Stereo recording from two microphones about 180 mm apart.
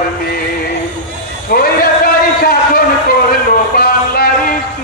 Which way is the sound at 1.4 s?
55° left (ahead or behind).